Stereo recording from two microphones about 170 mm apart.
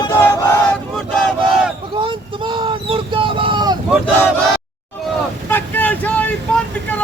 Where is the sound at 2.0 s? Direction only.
30° right (ahead or behind).